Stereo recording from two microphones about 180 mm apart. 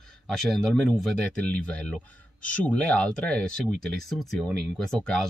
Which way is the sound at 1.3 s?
5° left (ahead or behind).